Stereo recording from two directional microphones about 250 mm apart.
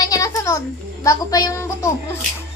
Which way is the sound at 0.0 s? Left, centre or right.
Centre.